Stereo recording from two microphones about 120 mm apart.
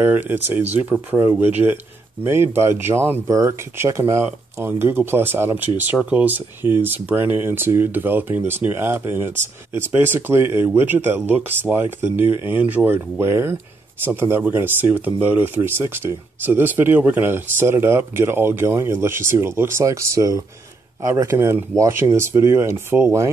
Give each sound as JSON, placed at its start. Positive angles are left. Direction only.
{"t": 0.0, "sound": "speech", "side_deg": -15}